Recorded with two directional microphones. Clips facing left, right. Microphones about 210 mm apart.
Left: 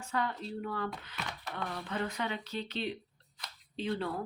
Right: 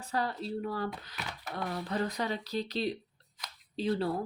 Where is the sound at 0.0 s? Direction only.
35° right (ahead or behind).